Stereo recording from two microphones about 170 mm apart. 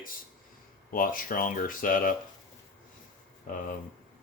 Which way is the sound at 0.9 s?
55° left (ahead or behind).